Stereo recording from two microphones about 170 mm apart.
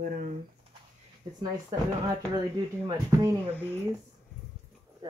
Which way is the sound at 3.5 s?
10° left (ahead or behind).